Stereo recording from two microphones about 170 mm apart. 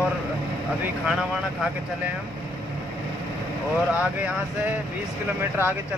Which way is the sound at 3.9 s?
10° right (ahead or behind).